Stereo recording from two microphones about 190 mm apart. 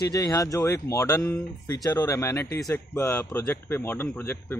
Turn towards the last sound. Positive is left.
turn(degrees=10)  # may be behind; listen again after turning